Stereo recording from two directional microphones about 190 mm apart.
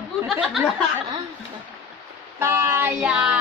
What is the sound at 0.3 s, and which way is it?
Speech, centre (ahead or behind).